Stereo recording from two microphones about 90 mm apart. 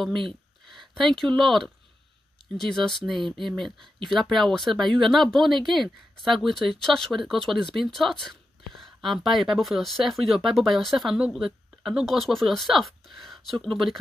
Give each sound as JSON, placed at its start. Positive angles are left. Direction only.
{"t": 0.7, "sound": "speech", "side_deg": 5}